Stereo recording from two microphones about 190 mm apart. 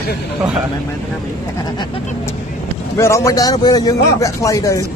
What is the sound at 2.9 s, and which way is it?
A man's voice, 15° left (ahead or behind).